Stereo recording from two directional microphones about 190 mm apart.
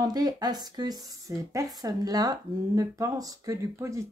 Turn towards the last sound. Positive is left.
turn(degrees=-15)  # may be behind; listen again after turning